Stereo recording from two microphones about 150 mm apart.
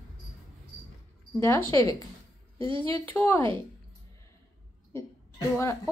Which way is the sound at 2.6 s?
35° right (ahead or behind).